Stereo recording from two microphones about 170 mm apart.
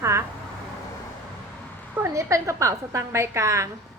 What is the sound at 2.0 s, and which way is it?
A woman's voice, 15° right (ahead or behind).